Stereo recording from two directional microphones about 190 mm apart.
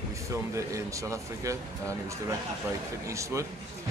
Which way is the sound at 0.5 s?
15° right (ahead or behind).